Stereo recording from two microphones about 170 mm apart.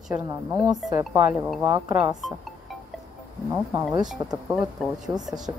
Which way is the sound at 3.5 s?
10° right (ahead or behind).